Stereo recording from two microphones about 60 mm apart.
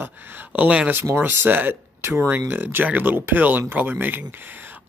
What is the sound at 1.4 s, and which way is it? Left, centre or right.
Speech, right.